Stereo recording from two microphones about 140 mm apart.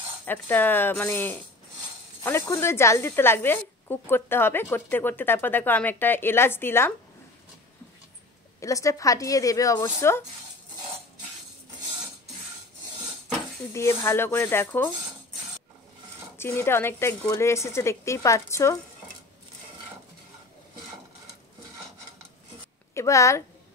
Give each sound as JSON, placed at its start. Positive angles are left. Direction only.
{"t": 0.2, "sound": "speech", "side_deg": 15}
{"t": 8.5, "sound": "speech", "side_deg": 25}
{"t": 13.7, "sound": "speech", "side_deg": 20}
{"t": 16.3, "sound": "speech", "side_deg": 15}
{"t": 22.9, "sound": "speech", "side_deg": 20}